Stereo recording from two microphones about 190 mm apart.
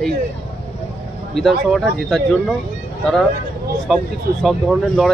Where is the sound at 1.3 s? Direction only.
Centre (ahead or behind).